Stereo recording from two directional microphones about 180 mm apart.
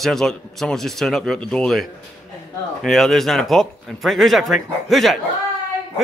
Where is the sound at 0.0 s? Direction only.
Centre (ahead or behind).